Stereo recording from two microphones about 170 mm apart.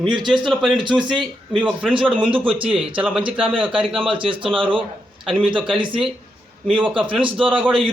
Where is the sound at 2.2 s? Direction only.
30° right (ahead or behind).